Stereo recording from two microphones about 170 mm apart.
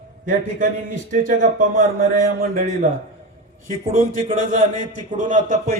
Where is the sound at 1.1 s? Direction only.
50° right (ahead or behind).